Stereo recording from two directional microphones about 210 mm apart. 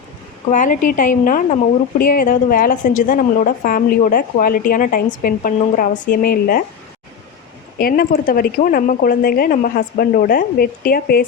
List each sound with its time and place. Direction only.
0.5 s a woman's voice: 40° left (ahead or behind)
7.8 s a woman's voice: 45° left (ahead or behind)